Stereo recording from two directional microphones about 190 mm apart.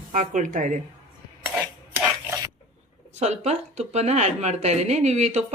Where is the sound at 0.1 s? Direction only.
45° right (ahead or behind).